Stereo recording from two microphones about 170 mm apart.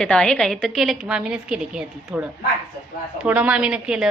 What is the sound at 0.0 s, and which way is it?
A woman's voice, 5° left (ahead or behind).